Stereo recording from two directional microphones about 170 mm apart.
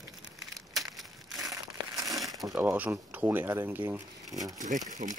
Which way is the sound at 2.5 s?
10° right (ahead or behind).